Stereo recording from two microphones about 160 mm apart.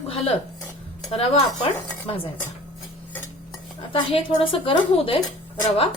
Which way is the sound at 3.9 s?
35° left (ahead or behind).